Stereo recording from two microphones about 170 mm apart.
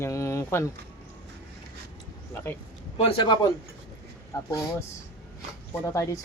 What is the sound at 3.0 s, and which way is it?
Speech, 25° left (ahead or behind).